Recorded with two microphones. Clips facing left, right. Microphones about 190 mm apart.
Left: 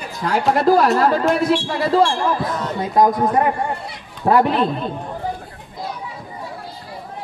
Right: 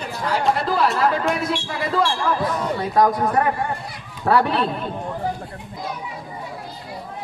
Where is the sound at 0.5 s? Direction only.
45° left (ahead or behind); by 4.6 s 20° left (ahead or behind).